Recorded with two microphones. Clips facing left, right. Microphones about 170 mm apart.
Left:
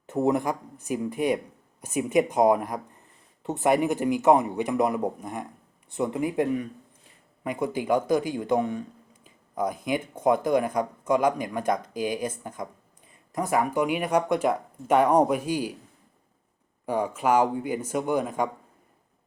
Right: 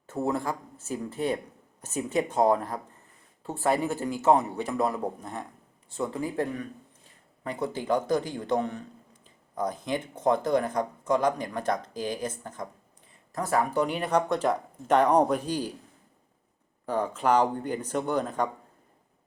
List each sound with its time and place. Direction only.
0.1 s speech: 15° left (ahead or behind)
9.2 s a sound: 10° left (ahead or behind)
10.2 s speech: 10° left (ahead or behind)
16.8 s speech: 10° left (ahead or behind)